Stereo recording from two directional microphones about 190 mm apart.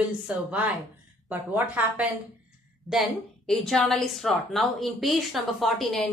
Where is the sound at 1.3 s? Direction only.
10° right (ahead or behind).